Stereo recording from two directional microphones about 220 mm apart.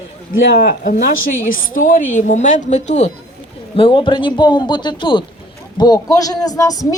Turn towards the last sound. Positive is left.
turn(degrees=15)  # may be behind; listen again after turning